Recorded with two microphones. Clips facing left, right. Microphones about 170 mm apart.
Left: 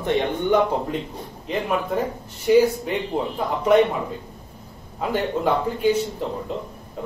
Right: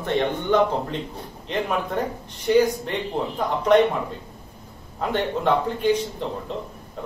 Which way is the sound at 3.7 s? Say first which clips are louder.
Even; 5° left (ahead or behind).